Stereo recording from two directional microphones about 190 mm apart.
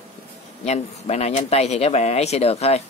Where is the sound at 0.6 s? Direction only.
35° left (ahead or behind).